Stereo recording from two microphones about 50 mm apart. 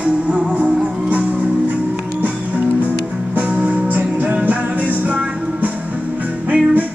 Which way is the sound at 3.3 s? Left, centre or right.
Right.